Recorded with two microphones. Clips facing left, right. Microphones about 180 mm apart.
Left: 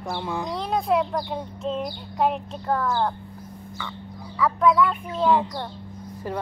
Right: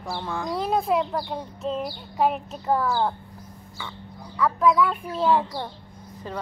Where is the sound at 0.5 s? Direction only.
5° right (ahead or behind).